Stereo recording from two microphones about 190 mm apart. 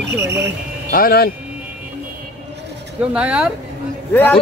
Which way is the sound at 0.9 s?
50° left (ahead or behind).